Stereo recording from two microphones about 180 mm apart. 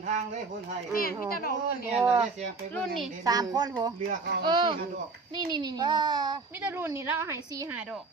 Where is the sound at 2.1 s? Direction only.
35° right (ahead or behind).